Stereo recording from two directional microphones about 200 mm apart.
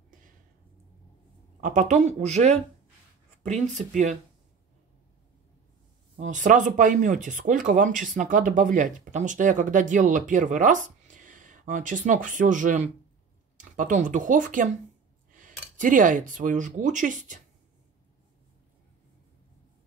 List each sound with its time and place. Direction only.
1.6 s speech: 40° right (ahead or behind)
6.1 s speech: 40° right (ahead or behind)